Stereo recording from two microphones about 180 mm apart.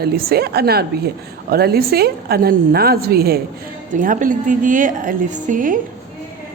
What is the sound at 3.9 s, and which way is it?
A woman's voice, 45° right (ahead or behind).